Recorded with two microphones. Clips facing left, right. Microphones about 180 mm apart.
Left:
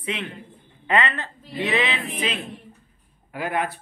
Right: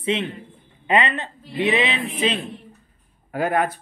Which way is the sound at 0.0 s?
25° right (ahead or behind).